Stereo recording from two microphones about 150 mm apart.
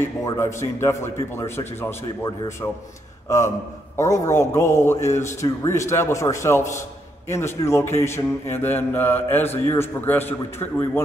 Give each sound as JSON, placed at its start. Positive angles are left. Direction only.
{"t": 0.2, "sound": "speech", "side_deg": 20}
{"t": 5.0, "sound": "speech", "side_deg": 50}
{"t": 5.4, "sound": "a man's voice", "side_deg": 20}